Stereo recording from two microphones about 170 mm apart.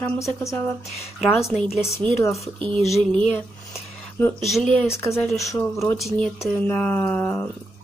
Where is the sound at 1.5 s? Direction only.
5° right (ahead or behind).